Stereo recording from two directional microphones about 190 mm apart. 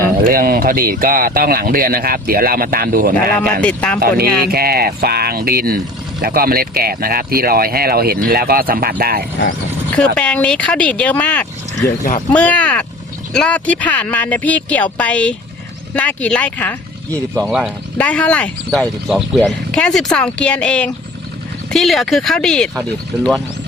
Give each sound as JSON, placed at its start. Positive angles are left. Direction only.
{"t": 0.2, "sound": "speech", "side_deg": -50}
{"t": 3.6, "sound": "speech", "side_deg": 5}
{"t": 4.0, "sound": "speech", "side_deg": -55}
{"t": 10.2, "sound": "speech", "side_deg": 5}
{"t": 17.4, "sound": "speech", "side_deg": -5}
{"t": 17.9, "sound": "speech", "side_deg": 5}
{"t": 19.0, "sound": "speech", "side_deg": -5}